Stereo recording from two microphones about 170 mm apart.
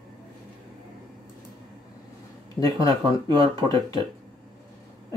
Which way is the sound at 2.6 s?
20° left (ahead or behind).